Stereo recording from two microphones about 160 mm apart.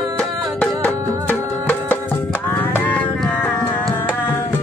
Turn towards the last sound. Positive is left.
turn(degrees=10)  # may be behind; listen again after turning